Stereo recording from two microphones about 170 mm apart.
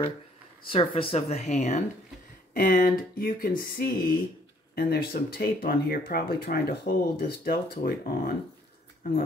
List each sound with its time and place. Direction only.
0.7 s speech: 30° left (ahead or behind)
2.5 s speech: 55° left (ahead or behind)